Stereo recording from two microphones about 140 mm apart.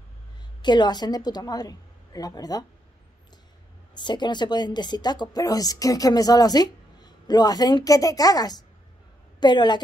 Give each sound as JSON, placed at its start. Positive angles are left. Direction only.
{"t": 0.6, "sound": "speech", "side_deg": 30}
{"t": 3.9, "sound": "a woman's voice", "side_deg": 30}